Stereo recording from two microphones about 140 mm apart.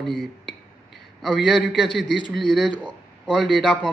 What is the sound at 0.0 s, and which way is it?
A man's voice, centre (ahead or behind).